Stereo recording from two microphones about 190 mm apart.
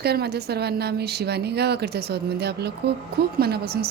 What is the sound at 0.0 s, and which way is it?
Speech, 55° right (ahead or behind).